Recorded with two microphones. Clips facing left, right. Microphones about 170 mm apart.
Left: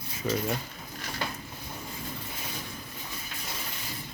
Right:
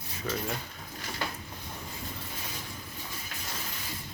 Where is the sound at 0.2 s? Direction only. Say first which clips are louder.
Left 5 dB; 20° left (ahead or behind).